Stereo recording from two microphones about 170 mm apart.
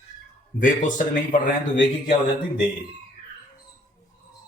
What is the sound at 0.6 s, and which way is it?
Speech, 50° left (ahead or behind).